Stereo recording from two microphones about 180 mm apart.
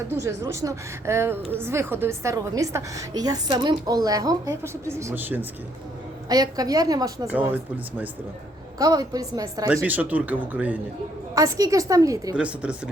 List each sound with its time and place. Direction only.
0.1 s a woman's voice: 15° right (ahead or behind)
6.2 s a woman's voice: 20° right (ahead or behind)
7.5 s a woman's voice: 10° right (ahead or behind)
8.8 s a woman's voice: 20° right (ahead or behind)
9.6 s a woman's voice: 10° right (ahead or behind)
11.3 s a woman's voice: 20° right (ahead or behind)
12.4 s a woman's voice: 5° right (ahead or behind)